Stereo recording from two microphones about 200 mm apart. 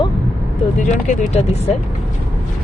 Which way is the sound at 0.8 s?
35° left (ahead or behind).